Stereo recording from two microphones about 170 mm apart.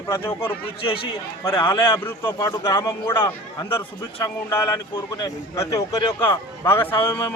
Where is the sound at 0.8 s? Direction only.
30° left (ahead or behind).